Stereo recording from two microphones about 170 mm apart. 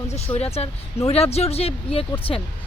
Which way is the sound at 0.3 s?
35° left (ahead or behind).